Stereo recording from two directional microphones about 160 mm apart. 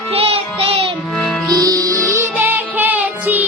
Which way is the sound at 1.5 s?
25° right (ahead or behind).